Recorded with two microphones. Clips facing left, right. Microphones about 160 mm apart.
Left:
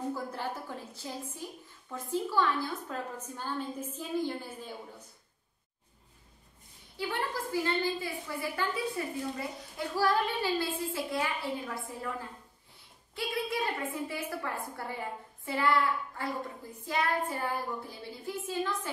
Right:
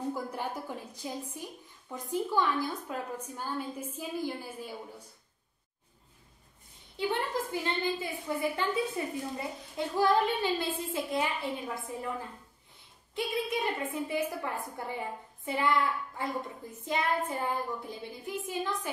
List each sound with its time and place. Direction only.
0.1 s a woman's voice: 15° right (ahead or behind)
7.0 s a woman's voice: 20° right (ahead or behind)
13.1 s a woman's voice: 20° right (ahead or behind)